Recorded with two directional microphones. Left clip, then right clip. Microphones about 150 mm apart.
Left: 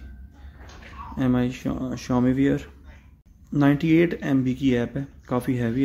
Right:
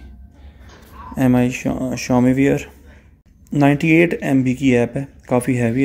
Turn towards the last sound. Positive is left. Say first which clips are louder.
# right 8 dB
turn(degrees=-10)  # may be behind; listen again after turning